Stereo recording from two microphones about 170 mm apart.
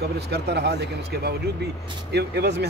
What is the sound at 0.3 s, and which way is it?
Speech, 75° right (ahead or behind).